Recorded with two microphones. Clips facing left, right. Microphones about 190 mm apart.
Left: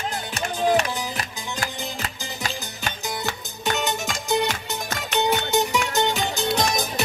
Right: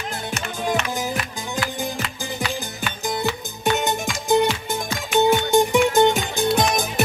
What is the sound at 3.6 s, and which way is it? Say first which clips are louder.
Music: right 4 dB; 50° right (ahead or behind).